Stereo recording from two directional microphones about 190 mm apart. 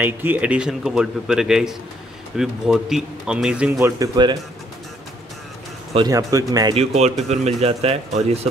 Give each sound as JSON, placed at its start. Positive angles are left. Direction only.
{"t": 0.0, "sound": "speech", "side_deg": -10}
{"t": 3.7, "sound": "speech", "side_deg": -15}
{"t": 5.9, "sound": "speech", "side_deg": -20}
{"t": 6.7, "sound": "speech", "side_deg": -35}